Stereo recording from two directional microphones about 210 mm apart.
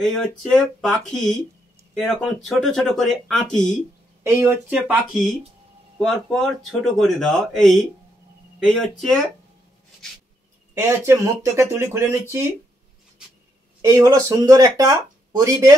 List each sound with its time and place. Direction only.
0.0 s speech: centre (ahead or behind)
4.2 s speech: 10° right (ahead or behind)
10.7 s speech: 10° right (ahead or behind)
13.7 s speech: 15° right (ahead or behind)